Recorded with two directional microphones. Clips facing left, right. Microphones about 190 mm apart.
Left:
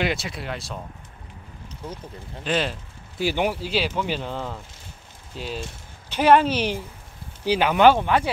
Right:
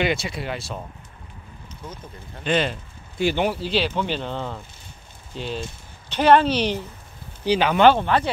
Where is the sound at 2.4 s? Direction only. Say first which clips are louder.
Right 3 dB; centre (ahead or behind).